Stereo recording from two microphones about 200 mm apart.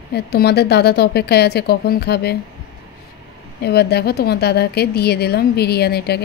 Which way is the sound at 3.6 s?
55° left (ahead or behind).